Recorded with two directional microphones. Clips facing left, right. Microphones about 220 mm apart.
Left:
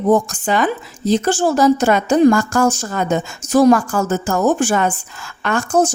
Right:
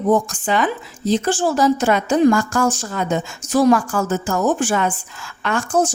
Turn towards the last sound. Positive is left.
turn(degrees=45)  # may be behind; listen again after turning